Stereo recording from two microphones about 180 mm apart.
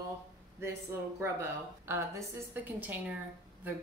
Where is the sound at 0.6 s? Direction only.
15° right (ahead or behind).